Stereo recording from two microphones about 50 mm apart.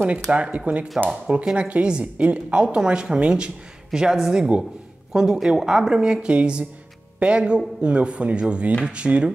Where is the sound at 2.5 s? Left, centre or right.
Centre.